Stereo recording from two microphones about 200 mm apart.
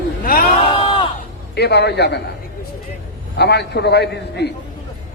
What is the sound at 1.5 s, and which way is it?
Speech, 55° left (ahead or behind).